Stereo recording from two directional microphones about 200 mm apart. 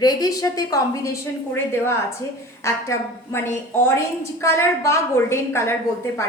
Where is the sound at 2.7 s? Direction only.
15° left (ahead or behind).